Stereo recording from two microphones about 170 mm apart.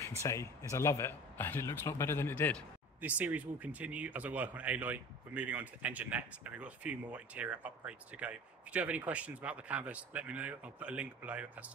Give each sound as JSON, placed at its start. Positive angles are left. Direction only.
{"t": 0.2, "sound": "speech", "side_deg": 15}
{"t": 3.0, "sound": "speech", "side_deg": -10}